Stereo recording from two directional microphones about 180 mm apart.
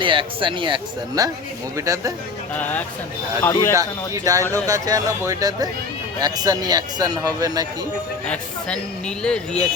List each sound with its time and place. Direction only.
0.0 s speech: 30° right (ahead or behind)
2.6 s speech: 10° left (ahead or behind)
3.8 s speech: 20° right (ahead or behind)
8.3 s speech: 5° left (ahead or behind)